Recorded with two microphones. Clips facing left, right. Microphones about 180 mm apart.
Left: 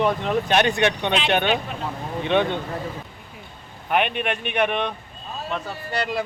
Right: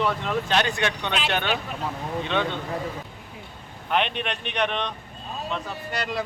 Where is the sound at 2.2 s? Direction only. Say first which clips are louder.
Left 7 dB; 15° left (ahead or behind).